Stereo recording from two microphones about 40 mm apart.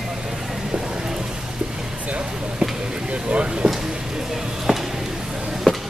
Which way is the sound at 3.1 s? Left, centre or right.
Right.